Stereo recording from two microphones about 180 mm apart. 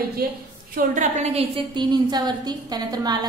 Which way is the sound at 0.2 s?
60° right (ahead or behind).